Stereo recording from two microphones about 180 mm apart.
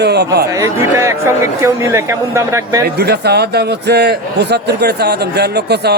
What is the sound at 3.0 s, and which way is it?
A man's voice, 65° right (ahead or behind).